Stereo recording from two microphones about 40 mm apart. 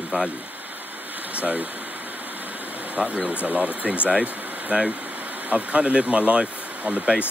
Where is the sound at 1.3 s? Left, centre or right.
Right.